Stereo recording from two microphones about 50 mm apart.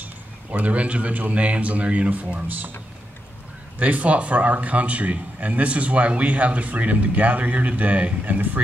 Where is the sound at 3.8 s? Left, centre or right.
Right.